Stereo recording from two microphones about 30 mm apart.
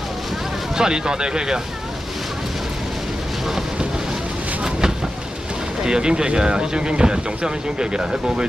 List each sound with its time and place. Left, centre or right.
0.7 s speech: right
4.6 s vehicle: right
5.9 s speech: right